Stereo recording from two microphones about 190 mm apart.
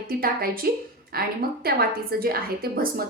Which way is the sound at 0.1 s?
50° right (ahead or behind).